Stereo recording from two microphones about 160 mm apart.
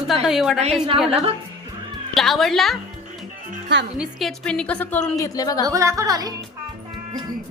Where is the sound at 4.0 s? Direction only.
Centre (ahead or behind).